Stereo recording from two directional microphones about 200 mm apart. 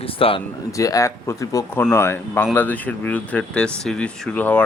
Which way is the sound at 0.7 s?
15° left (ahead or behind).